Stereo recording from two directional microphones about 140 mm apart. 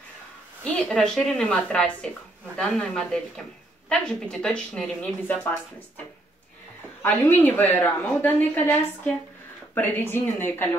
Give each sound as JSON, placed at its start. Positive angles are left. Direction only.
{"t": 0.7, "sound": "a woman's voice", "side_deg": 5}
{"t": 5.2, "sound": "a woman's voice", "side_deg": 15}
{"t": 7.0, "sound": "a woman's voice", "side_deg": 15}